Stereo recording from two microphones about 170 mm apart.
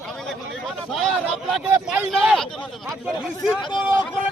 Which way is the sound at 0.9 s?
Centre (ahead or behind).